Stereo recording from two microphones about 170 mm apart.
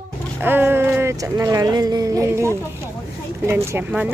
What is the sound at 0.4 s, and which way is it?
A woman's voice, 10° right (ahead or behind).